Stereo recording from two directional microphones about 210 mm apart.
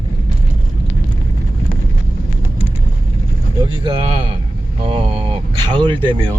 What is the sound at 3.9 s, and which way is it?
Speech, 25° right (ahead or behind).